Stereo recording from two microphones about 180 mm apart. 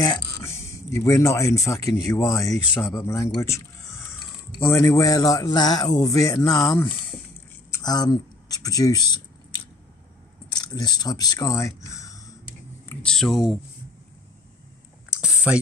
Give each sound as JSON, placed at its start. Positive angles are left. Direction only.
{"t": 0.0, "sound": "a sound", "side_deg": 15}
{"t": 0.9, "sound": "speech", "side_deg": 15}
{"t": 10.5, "sound": "speech", "side_deg": 20}
{"t": 12.8, "sound": "speech", "side_deg": 5}
{"t": 15.0, "sound": "whispering", "side_deg": -5}